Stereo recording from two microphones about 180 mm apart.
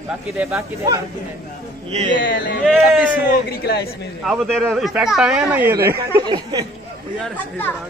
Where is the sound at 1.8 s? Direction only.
35° right (ahead or behind).